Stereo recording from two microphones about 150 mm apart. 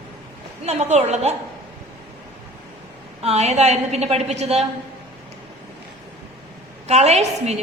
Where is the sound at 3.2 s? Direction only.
45° right (ahead or behind).